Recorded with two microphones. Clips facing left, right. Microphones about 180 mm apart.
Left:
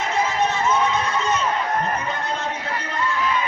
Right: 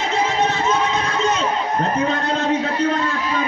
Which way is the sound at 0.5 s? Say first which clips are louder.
Right 1 dB; 90° right.